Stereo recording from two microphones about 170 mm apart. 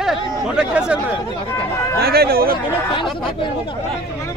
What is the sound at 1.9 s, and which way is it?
Speech, 65° right (ahead or behind).